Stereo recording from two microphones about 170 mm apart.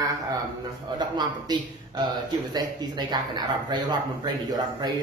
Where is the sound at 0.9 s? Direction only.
25° right (ahead or behind).